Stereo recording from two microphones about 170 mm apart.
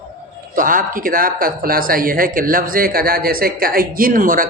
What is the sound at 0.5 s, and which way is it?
Speech, 55° right (ahead or behind).